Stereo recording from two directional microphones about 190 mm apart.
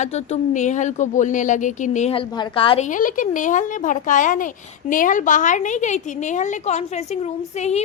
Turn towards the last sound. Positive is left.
turn(degrees=35)  # may be behind; listen again after turning